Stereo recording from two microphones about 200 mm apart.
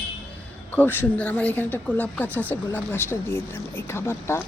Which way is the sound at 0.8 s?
10° left (ahead or behind).